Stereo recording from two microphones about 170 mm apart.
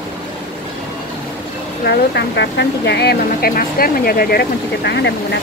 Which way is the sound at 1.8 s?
80° left.